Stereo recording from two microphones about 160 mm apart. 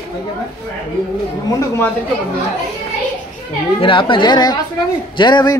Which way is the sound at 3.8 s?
30° left (ahead or behind).